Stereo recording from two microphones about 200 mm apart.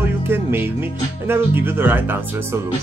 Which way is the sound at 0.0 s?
10° right (ahead or behind).